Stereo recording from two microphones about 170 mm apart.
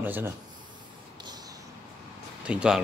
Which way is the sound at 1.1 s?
25° right (ahead or behind).